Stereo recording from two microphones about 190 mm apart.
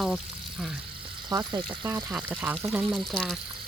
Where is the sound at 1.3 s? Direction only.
20° right (ahead or behind).